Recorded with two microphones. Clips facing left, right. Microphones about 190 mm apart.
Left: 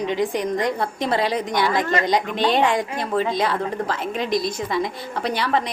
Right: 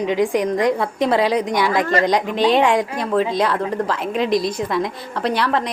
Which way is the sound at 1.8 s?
35° right (ahead or behind).